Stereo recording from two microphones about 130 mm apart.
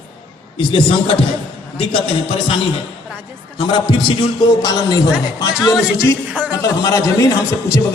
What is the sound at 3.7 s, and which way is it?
A man's voice, 40° left (ahead or behind).